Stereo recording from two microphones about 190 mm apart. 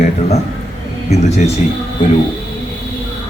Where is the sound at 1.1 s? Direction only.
35° left (ahead or behind).